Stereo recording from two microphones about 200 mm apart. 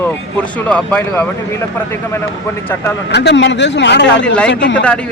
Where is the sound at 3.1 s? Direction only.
60° left (ahead or behind).